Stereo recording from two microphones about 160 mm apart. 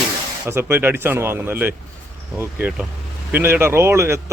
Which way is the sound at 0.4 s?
15° right (ahead or behind).